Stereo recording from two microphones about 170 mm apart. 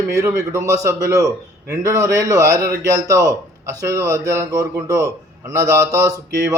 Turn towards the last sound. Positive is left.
turn(degrees=-20)  # may be behind; listen again after turning